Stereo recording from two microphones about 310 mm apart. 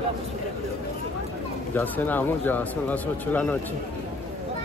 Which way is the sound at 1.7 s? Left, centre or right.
Centre.